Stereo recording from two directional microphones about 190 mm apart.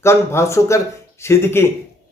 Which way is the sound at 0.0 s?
15° left (ahead or behind).